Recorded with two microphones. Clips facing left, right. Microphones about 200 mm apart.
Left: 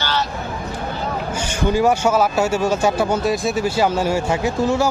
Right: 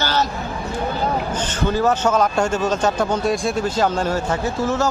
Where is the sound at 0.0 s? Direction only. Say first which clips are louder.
Right 2 dB; 45° right (ahead or behind).